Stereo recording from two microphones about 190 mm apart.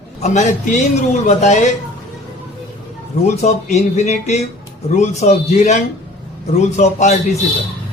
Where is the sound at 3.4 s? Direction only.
35° left (ahead or behind).